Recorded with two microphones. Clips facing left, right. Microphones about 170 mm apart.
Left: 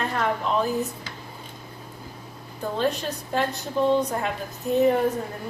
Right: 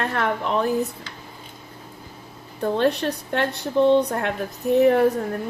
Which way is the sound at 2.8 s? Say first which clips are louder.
Right 2 dB; 65° right (ahead or behind).